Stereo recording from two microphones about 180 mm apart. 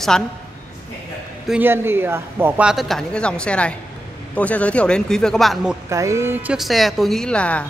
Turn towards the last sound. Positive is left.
turn(degrees=5)  # may be behind; listen again after turning